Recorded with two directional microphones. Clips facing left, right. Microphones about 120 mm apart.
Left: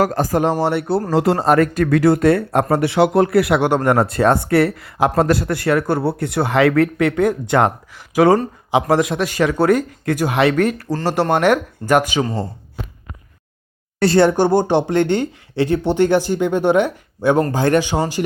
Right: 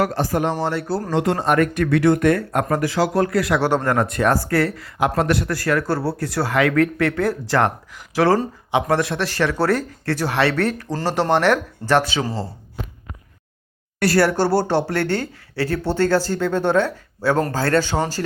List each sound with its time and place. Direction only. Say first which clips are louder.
0.0 s a man's voice: left 3 dB; 45° left (ahead or behind)
2.1 s a man's voice: left 3 dB; 25° left (ahead or behind)
5.5 s speech: left 3 dB; 25° left (ahead or behind)
14.0 s speech: left 4 dB; 25° left (ahead or behind)